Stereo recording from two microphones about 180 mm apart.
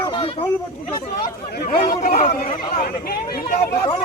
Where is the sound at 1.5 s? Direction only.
55° left (ahead or behind).